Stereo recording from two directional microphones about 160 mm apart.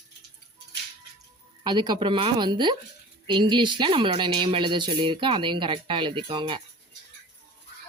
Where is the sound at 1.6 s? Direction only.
30° right (ahead or behind).